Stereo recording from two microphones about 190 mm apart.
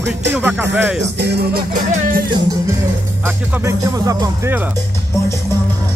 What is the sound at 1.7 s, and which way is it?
Music, 45° right (ahead or behind).